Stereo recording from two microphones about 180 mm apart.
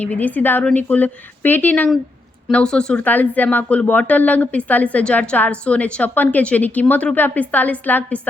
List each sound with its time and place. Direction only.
0.0 s a woman's voice: 10° left (ahead or behind)